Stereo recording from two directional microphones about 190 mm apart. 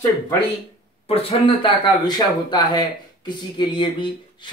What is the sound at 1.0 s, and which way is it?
Speech, 30° left (ahead or behind).